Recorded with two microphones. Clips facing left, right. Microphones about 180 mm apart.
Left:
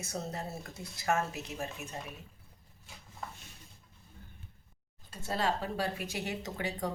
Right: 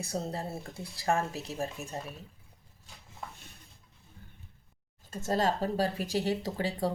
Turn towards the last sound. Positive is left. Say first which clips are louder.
# right 4 dB
turn(degrees=-35)  # may be behind; listen again after turning